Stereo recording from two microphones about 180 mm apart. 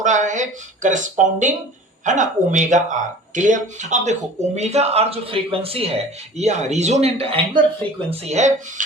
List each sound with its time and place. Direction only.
0.0 s speech: 45° right (ahead or behind)